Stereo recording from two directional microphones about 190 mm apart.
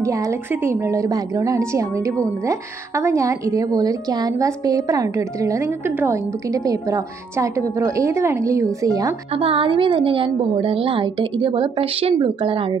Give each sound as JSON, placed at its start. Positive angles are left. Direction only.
{"t": 0.0, "sound": "a woman's voice", "side_deg": -15}
{"t": 9.3, "sound": "a woman's voice", "side_deg": -30}